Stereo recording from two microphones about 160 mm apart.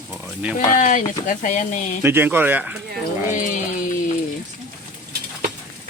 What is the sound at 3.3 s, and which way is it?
Speech, 50° left (ahead or behind).